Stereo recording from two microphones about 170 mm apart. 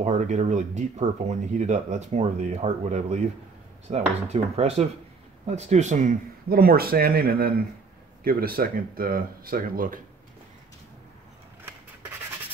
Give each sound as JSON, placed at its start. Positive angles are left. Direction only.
{"t": 0.0, "sound": "speech", "side_deg": -45}